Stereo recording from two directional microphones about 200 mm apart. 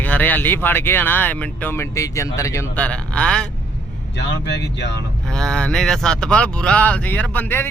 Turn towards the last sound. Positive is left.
turn(degrees=10)  # may be behind; listen again after turning